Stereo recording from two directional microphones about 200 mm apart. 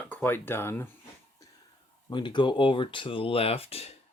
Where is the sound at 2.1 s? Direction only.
25° left (ahead or behind).